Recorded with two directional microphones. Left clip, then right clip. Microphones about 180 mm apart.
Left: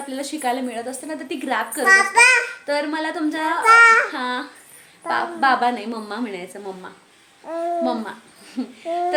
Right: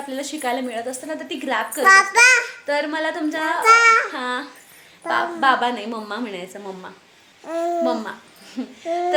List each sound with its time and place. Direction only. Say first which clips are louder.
0.1 s a woman's voice: left 1 dB; centre (ahead or behind)
1.8 s a child's voice: right 1 dB; 45° right (ahead or behind)
2.6 s a woman's voice: right 1 dB; centre (ahead or behind)
3.6 s child singing: left 1 dB; 15° right (ahead or behind)
4.1 s a woman's voice: even; centre (ahead or behind)
7.4 s babbling: right 2 dB; 20° right (ahead or behind)
7.9 s a child's voice: right 1 dB; centre (ahead or behind)